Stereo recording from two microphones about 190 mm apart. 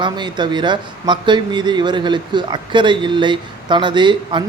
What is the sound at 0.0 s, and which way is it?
Speech, 25° right (ahead or behind).